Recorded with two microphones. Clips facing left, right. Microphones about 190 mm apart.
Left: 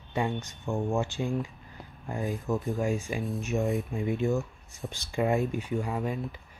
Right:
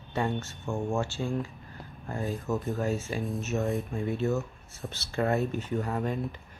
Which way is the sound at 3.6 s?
Centre (ahead or behind).